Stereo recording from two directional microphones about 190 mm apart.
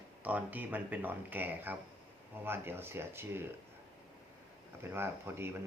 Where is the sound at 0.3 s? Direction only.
10° right (ahead or behind).